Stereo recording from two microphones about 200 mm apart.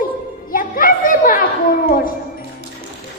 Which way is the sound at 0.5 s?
45° left (ahead or behind).